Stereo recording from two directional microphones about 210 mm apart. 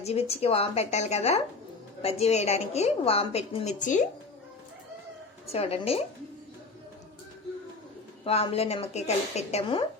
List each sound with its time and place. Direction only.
0.0 s a woman's voice: 30° left (ahead or behind)
5.5 s speech: 30° left (ahead or behind)
8.2 s speech: 25° left (ahead or behind)